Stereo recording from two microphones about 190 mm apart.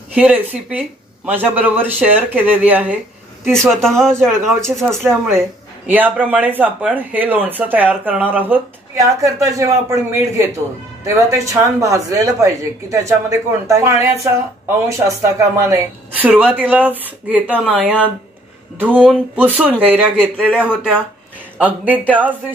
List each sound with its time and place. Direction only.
0.1 s speech: 10° right (ahead or behind)
3.4 s speech: centre (ahead or behind)
5.3 s speech: 10° right (ahead or behind)
19.3 s speech: 10° right (ahead or behind)